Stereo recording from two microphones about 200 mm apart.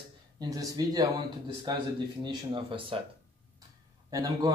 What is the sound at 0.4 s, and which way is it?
Speech, 15° right (ahead or behind).